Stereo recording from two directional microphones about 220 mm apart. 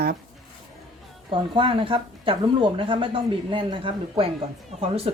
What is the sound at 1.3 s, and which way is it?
Speech, 25° right (ahead or behind).